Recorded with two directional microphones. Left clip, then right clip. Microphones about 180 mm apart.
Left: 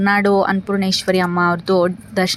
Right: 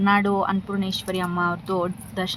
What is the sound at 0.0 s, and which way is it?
Speech, 20° left (ahead or behind).